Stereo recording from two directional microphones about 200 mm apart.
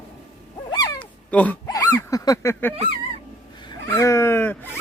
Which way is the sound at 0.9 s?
5° left (ahead or behind).